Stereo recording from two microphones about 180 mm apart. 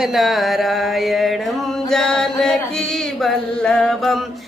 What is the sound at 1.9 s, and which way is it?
Chant, 5° left (ahead or behind).